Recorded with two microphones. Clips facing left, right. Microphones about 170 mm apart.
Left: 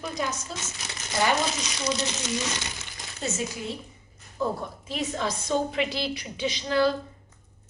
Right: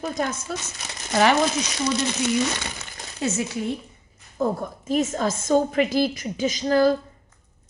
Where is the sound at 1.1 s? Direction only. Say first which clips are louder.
Right 6 dB; 75° right (ahead or behind).